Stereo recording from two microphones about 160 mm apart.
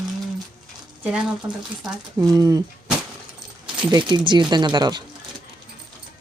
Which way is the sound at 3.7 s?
30° right (ahead or behind).